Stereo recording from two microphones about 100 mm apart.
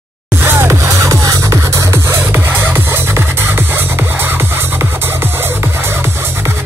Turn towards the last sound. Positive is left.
turn(degrees=-25)  # may be behind; listen again after turning